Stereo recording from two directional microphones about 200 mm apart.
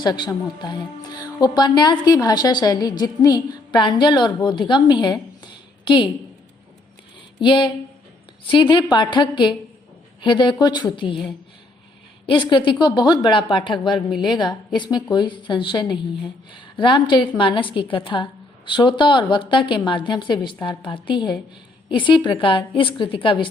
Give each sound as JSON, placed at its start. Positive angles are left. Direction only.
{"t": 0.0, "sound": "a woman's voice", "side_deg": 20}
{"t": 7.3, "sound": "a woman's voice", "side_deg": 25}
{"t": 12.2, "sound": "a woman's voice", "side_deg": 25}